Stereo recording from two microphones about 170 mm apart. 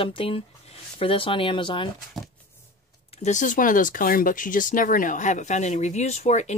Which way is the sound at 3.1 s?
45° left (ahead or behind).